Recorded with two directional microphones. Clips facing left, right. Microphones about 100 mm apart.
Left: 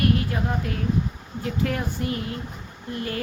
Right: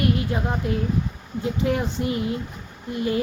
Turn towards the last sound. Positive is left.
turn(degrees=-20)  # may be behind; listen again after turning